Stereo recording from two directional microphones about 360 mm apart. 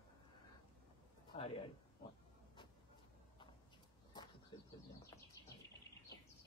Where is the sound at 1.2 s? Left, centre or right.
Centre.